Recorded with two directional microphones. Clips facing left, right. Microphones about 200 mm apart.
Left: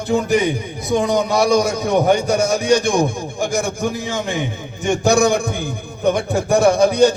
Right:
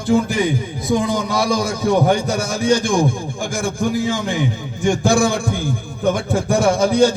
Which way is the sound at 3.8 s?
20° left (ahead or behind).